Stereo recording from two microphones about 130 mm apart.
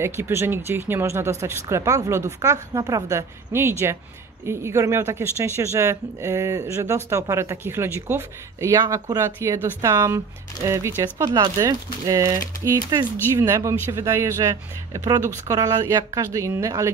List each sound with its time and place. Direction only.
0.0 s speech: 20° right (ahead or behind)